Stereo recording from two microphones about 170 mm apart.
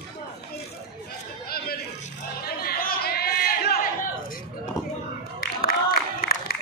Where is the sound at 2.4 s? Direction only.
65° left (ahead or behind).